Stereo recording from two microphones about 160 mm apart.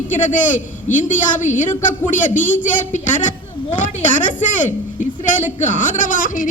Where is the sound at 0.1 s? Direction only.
50° left (ahead or behind).